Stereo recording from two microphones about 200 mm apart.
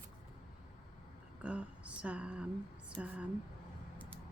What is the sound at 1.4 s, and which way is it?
A woman's voice, 5° right (ahead or behind).